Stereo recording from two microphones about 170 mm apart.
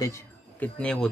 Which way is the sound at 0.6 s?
5° left (ahead or behind).